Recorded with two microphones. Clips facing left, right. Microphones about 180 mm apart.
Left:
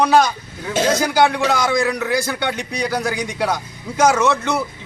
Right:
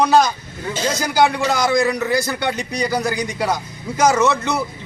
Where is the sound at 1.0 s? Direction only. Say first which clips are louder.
Left 1 dB; centre (ahead or behind).